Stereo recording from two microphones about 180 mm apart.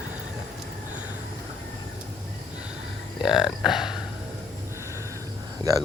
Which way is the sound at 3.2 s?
25° left (ahead or behind).